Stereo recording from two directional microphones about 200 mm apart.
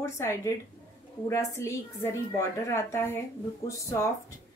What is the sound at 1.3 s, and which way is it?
A woman's voice, 15° left (ahead or behind).